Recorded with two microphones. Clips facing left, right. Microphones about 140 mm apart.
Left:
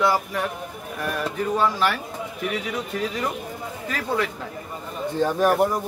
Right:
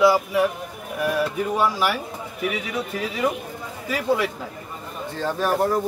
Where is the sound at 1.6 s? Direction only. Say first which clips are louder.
Even; 10° right (ahead or behind).